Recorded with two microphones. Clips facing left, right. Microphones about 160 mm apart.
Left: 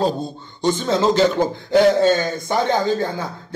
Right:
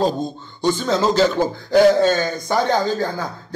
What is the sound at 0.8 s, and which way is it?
A man's voice, 20° left (ahead or behind).